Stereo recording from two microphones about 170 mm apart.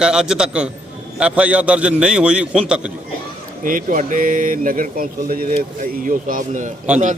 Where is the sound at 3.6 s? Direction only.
55° right (ahead or behind).